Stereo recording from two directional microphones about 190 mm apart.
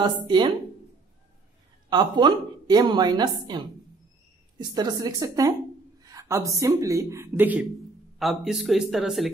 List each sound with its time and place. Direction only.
0.0 s a woman's voice: 25° right (ahead or behind)
1.9 s a woman's voice: 20° right (ahead or behind); by 9.3 s centre (ahead or behind)